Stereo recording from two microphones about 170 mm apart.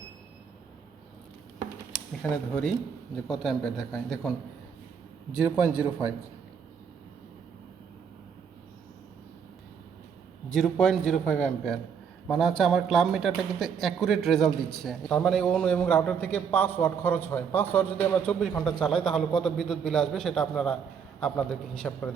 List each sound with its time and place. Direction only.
2.2 s a man's voice: 10° left (ahead or behind)
3.2 s a man's voice: centre (ahead or behind)
5.3 s a man's voice: 5° right (ahead or behind)
10.5 s a man's voice: centre (ahead or behind)